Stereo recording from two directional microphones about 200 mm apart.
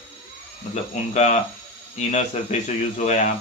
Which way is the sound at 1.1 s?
35° left (ahead or behind).